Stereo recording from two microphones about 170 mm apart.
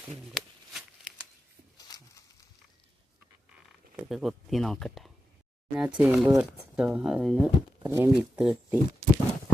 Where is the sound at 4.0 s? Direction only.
Centre (ahead or behind).